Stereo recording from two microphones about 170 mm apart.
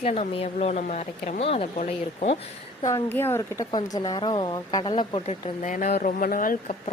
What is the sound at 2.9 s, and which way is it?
Speech, 15° left (ahead or behind).